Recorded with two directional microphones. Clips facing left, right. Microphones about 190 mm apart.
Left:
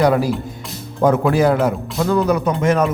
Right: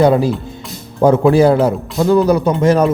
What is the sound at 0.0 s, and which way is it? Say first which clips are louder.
A man's voice: right 4 dB; 25° right (ahead or behind).